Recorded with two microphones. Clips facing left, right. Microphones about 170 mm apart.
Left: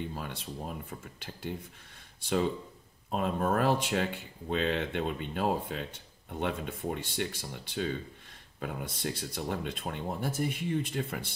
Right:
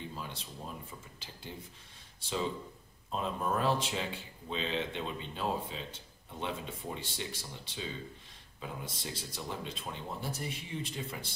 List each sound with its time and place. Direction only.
0.2 s speech: 55° left (ahead or behind)
3.1 s speech: 55° left (ahead or behind)